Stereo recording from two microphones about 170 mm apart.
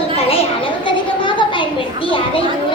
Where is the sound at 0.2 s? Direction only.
35° left (ahead or behind).